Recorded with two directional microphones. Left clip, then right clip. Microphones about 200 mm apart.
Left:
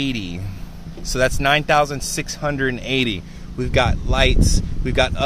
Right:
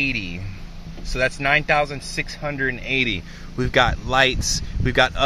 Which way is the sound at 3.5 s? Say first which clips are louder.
Right 1 dB; 5° right (ahead or behind).